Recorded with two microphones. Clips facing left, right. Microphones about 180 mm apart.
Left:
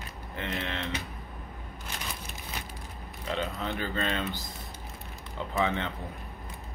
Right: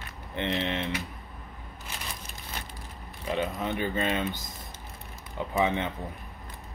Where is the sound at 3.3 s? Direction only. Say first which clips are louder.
Right 3 dB; 15° right (ahead or behind).